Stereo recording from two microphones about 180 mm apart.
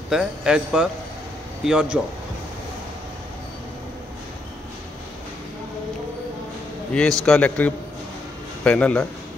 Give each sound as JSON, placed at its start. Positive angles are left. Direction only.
{"t": 0.1, "sound": "speech", "side_deg": -5}
{"t": 6.9, "sound": "a man's voice", "side_deg": 5}